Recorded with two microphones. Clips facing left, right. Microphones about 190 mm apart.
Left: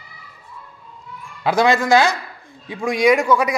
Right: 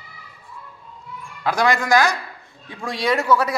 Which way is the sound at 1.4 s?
20° left (ahead or behind).